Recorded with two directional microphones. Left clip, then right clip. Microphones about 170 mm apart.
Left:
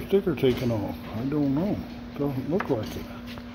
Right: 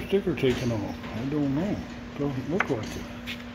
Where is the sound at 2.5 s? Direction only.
25° left (ahead or behind).